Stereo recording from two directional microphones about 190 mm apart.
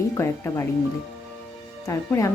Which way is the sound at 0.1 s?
15° left (ahead or behind).